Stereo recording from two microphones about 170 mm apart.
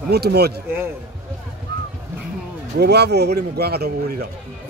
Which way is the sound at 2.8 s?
75° right (ahead or behind).